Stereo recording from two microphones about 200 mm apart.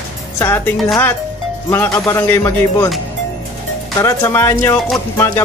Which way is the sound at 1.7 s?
15° left (ahead or behind).